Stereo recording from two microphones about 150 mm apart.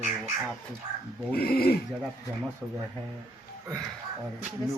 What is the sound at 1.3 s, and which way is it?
Speech, 90° left.